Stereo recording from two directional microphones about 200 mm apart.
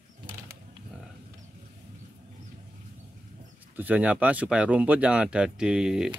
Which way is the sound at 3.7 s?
10° right (ahead or behind).